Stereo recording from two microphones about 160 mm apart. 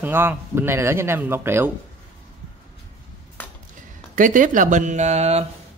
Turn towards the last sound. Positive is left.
turn(degrees=-40)  # may be behind; listen again after turning